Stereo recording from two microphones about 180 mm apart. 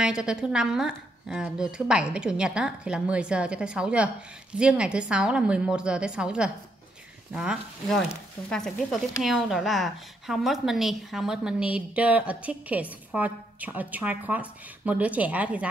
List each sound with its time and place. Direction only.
0.0 s a woman's voice: 5° right (ahead or behind)